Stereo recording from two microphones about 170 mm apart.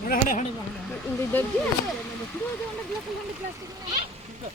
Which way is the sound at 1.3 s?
10° left (ahead or behind).